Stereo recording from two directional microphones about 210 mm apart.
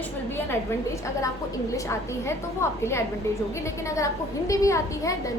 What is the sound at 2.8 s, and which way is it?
Speech, 10° left (ahead or behind).